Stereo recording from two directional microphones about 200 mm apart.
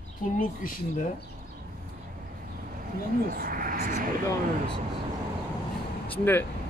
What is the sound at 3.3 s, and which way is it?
Speech, 45° right (ahead or behind).